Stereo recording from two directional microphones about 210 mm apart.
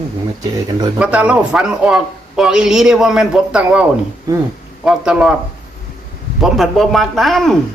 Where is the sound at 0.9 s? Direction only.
5° right (ahead or behind).